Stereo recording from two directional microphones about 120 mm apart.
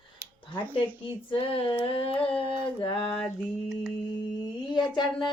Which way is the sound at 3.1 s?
Centre (ahead or behind).